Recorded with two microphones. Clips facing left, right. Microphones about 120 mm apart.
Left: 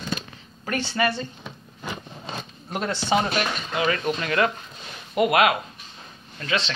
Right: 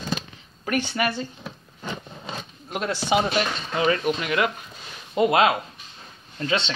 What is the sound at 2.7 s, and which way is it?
Speech, centre (ahead or behind).